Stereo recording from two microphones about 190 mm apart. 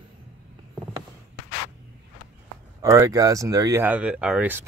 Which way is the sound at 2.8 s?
15° right (ahead or behind).